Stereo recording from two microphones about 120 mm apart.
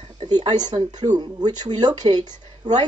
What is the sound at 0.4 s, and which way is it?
Speech, 35° right (ahead or behind).